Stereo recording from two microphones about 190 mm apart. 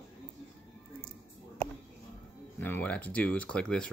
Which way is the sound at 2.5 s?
10° left (ahead or behind).